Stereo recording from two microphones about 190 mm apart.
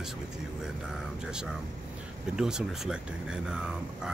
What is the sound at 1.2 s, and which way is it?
Speech, 5° right (ahead or behind).